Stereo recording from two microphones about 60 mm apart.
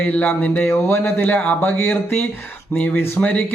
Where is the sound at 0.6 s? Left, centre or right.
Left.